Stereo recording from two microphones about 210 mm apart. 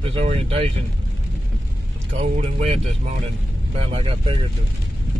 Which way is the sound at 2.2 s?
30° right (ahead or behind).